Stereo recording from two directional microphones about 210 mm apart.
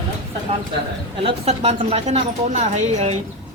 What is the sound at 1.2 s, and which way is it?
A woman's voice, 30° right (ahead or behind).